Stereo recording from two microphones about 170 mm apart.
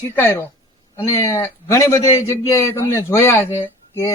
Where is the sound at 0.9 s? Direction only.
15° left (ahead or behind).